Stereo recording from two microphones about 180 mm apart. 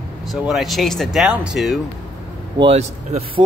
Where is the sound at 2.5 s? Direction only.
30° right (ahead or behind).